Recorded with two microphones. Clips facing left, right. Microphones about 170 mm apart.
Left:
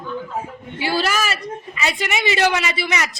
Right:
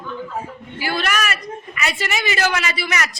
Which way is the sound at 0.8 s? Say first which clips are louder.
Left 2 dB; 30° left (ahead or behind).